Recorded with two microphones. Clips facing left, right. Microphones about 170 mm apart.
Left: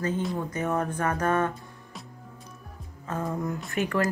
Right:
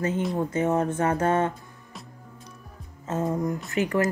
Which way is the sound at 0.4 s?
25° right (ahead or behind).